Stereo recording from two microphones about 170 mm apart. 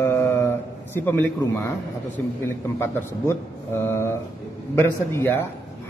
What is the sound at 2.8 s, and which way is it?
A man's voice, 15° left (ahead or behind).